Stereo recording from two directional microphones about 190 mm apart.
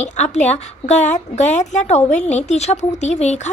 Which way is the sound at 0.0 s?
40° left (ahead or behind).